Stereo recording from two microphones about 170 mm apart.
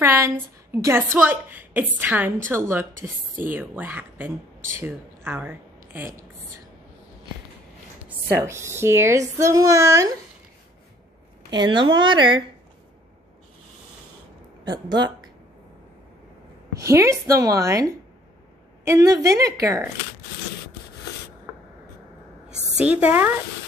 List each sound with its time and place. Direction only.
0.0 s a sound: 15° right (ahead or behind)
0.7 s a woman's voice: 15° right (ahead or behind)
8.5 s a woman's voice: 15° right (ahead or behind)
11.5 s a woman's voice: 25° right (ahead or behind)
14.6 s speech: 25° right (ahead or behind)
16.7 s a woman's voice: 20° right (ahead or behind)
18.9 s a woman's voice: 20° right (ahead or behind)
22.5 s a woman's voice: 5° right (ahead or behind)